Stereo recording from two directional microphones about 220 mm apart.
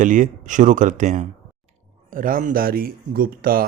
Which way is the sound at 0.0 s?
35° right (ahead or behind).